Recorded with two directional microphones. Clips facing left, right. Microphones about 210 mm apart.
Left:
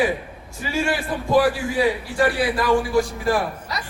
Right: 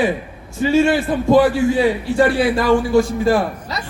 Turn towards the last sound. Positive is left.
turn(degrees=-25)  # may be behind; listen again after turning